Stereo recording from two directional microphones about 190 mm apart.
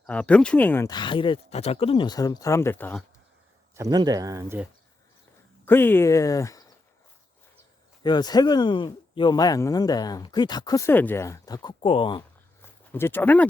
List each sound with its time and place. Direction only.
0.0 s speech: 5° left (ahead or behind)
0.9 s speech: 25° left (ahead or behind)
3.8 s speech: 20° right (ahead or behind)
5.6 s speech: 10° left (ahead or behind)
8.0 s speech: 20° left (ahead or behind)
12.9 s speech: 10° left (ahead or behind)